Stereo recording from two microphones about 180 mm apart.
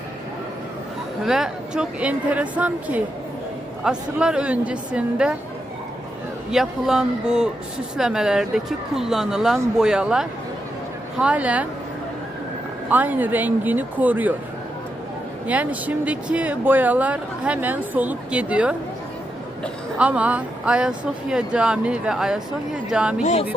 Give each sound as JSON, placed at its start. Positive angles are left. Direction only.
{"t": 1.2, "sound": "speech", "side_deg": 0}
{"t": 6.5, "sound": "speech", "side_deg": -5}
{"t": 12.9, "sound": "speech", "side_deg": -10}
{"t": 15.4, "sound": "speech", "side_deg": -10}
{"t": 20.0, "sound": "speech", "side_deg": -5}
{"t": 23.2, "sound": "speech", "side_deg": 40}